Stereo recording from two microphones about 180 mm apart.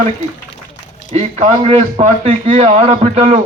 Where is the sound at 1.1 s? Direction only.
40° right (ahead or behind).